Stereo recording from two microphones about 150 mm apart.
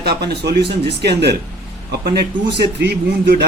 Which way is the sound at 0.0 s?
90° right.